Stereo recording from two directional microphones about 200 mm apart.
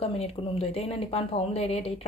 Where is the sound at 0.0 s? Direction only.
30° left (ahead or behind).